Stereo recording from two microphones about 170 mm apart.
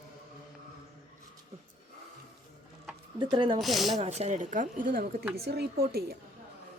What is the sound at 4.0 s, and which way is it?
A woman's voice, 40° right (ahead or behind).